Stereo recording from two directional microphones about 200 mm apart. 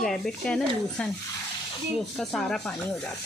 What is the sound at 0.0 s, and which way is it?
Speech, centre (ahead or behind).